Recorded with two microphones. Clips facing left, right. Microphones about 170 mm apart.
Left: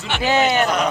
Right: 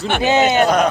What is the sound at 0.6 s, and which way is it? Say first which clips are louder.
Speech: right 5 dB; 45° right (ahead or behind).